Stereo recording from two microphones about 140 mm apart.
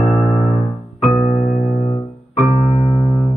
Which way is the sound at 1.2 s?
50° left (ahead or behind).